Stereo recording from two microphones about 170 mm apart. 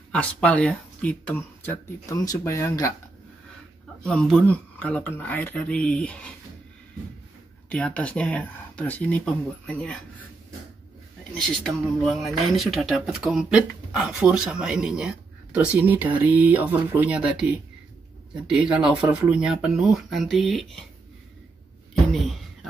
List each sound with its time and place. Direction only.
0.1 s speech: 5° left (ahead or behind)
4.0 s speech: 5° left (ahead or behind)
7.7 s speech: 10° left (ahead or behind)
11.3 s speech: 5° left (ahead or behind)
22.1 s a sound: centre (ahead or behind)